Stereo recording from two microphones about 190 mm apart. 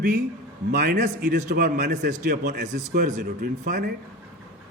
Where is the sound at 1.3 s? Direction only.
45° right (ahead or behind); by 2.1 s 60° right (ahead or behind).